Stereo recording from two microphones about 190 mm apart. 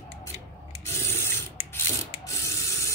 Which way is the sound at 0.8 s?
15° left (ahead or behind).